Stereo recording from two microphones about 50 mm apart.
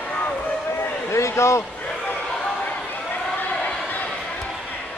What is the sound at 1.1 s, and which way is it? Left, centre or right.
Speech, left.